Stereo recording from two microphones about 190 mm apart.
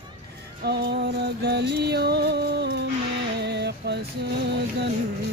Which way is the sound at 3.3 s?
60° right (ahead or behind).